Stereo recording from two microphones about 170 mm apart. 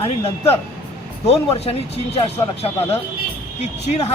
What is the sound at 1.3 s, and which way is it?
Speech, 35° left (ahead or behind).